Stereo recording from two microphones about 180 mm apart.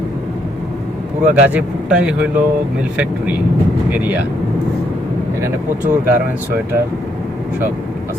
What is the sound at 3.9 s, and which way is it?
Speech, 10° right (ahead or behind).